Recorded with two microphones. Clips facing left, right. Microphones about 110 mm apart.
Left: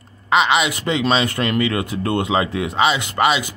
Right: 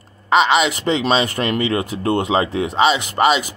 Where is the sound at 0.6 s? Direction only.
35° right (ahead or behind).